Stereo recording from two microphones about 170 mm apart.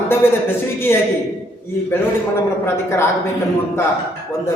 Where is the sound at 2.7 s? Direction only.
15° left (ahead or behind).